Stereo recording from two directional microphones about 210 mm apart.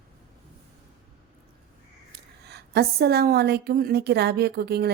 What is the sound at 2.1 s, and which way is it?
A woman's voice, 50° right (ahead or behind).